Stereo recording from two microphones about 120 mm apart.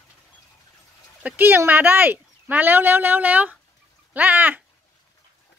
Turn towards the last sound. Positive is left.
turn(degrees=-15)  # may be behind; listen again after turning